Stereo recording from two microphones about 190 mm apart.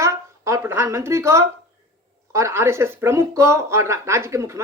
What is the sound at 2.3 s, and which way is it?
A woman's voice, 15° right (ahead or behind).